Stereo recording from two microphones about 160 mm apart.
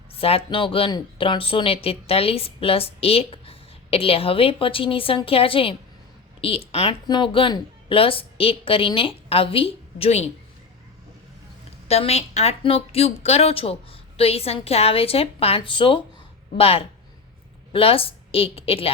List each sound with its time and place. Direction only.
0.1 s speech: 35° left (ahead or behind)
11.9 s a woman's voice: 40° left (ahead or behind)